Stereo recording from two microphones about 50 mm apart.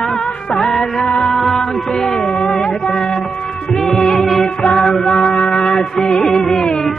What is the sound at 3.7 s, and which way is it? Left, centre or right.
Music, centre.